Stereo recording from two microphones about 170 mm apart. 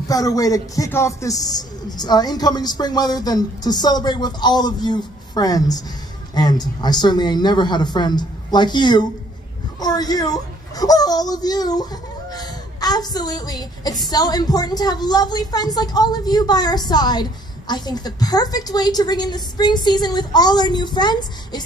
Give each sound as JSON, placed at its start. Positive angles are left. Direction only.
{"t": 0.1, "sound": "a child's voice", "side_deg": 20}